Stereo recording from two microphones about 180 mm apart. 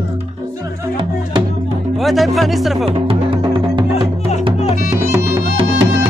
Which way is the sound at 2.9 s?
30° right (ahead or behind).